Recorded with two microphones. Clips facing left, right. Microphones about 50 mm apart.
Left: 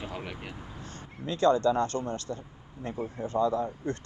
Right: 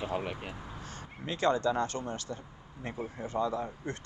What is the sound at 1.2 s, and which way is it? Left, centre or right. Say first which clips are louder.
Speech: left 5 dB; right.